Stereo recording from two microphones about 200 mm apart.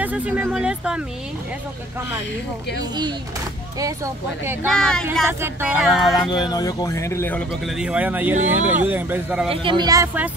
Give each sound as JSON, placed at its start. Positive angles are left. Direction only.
{"t": 0.0, "sound": "speech", "side_deg": -5}
{"t": 3.8, "sound": "speech", "side_deg": -15}
{"t": 4.6, "sound": "music", "side_deg": 5}
{"t": 5.4, "sound": "speech", "side_deg": -10}
{"t": 5.9, "sound": "music", "side_deg": 0}
{"t": 6.3, "sound": "speech", "side_deg": 20}
{"t": 9.5, "sound": "speech", "side_deg": -25}